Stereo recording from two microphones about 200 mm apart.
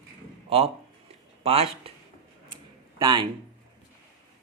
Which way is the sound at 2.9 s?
20° right (ahead or behind).